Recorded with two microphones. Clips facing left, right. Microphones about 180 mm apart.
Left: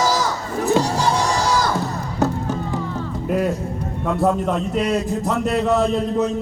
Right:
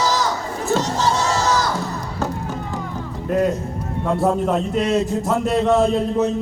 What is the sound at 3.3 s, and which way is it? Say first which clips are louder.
Speech: right 2 dB; 10° left (ahead or behind).